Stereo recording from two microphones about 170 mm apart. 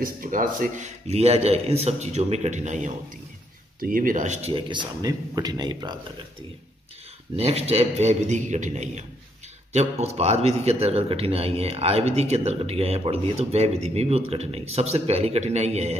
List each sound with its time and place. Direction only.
0.0 s a man's voice: 55° right (ahead or behind); by 5.9 s 25° right (ahead or behind)
7.3 s a man's voice: 35° right (ahead or behind)